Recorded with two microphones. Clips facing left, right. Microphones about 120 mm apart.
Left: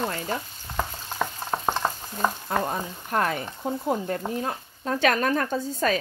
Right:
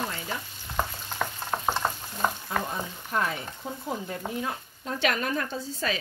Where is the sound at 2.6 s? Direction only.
50° left (ahead or behind).